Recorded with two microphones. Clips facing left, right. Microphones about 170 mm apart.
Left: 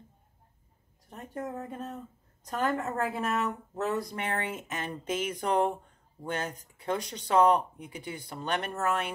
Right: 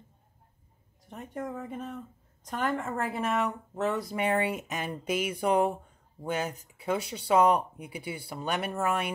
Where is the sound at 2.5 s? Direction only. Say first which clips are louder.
Left 1 dB; centre (ahead or behind).